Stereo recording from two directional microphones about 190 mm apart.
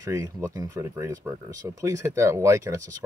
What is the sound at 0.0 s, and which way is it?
Speech, 15° right (ahead or behind).